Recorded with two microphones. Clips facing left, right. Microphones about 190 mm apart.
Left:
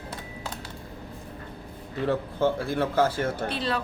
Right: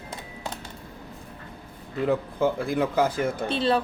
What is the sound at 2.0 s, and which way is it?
Speech, 10° right (ahead or behind).